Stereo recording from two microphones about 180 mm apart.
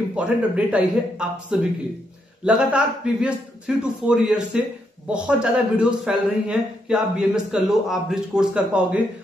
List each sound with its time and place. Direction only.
0.1 s a man's voice: 5° right (ahead or behind)